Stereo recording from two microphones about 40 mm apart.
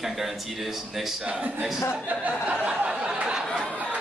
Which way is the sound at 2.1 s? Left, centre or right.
Right.